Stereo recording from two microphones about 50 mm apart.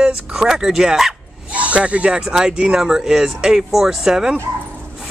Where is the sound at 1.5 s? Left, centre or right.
Right.